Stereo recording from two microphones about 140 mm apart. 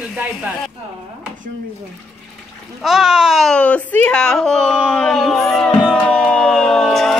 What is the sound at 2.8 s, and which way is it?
Speech, 5° right (ahead or behind).